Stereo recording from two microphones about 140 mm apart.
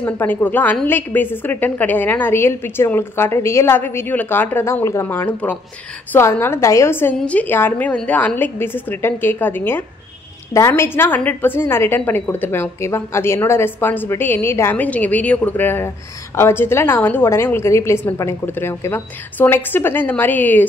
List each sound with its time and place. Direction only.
0.0 s a woman's voice: 15° left (ahead or behind)